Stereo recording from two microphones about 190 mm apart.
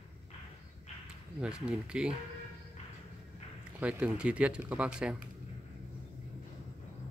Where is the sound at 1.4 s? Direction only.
5° right (ahead or behind).